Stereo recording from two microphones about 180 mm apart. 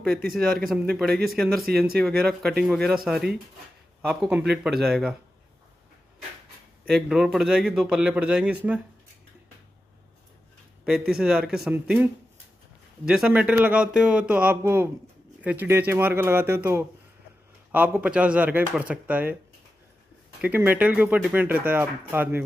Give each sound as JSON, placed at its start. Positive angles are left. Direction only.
{"t": 0.0, "sound": "speech", "side_deg": -55}
{"t": 0.3, "sound": "a man's voice", "side_deg": 0}
{"t": 4.1, "sound": "a man's voice", "side_deg": -5}
{"t": 6.9, "sound": "a man's voice", "side_deg": 0}
{"t": 11.1, "sound": "a man's voice", "side_deg": -5}
{"t": 20.3, "sound": "speech", "side_deg": -10}